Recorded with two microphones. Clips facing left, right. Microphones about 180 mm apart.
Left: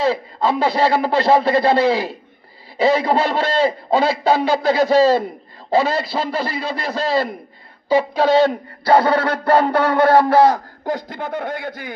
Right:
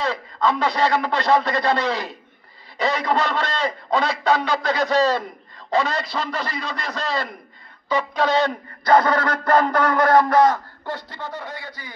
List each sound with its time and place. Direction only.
0.0 s a man's voice: 30° left (ahead or behind)
5.9 s a man's voice: 5° left (ahead or behind)
6.1 s a man's voice: 30° left (ahead or behind); by 11.9 s 55° left (ahead or behind)